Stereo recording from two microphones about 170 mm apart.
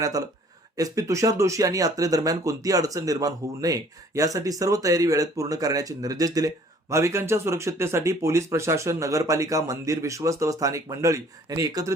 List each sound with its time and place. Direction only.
0.0 s speech: 20° right (ahead or behind)